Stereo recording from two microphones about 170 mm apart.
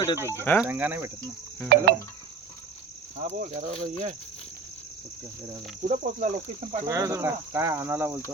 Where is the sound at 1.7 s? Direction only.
70° right (ahead or behind).